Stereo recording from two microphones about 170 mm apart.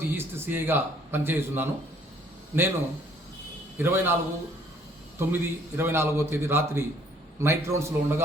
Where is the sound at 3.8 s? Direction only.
15° right (ahead or behind).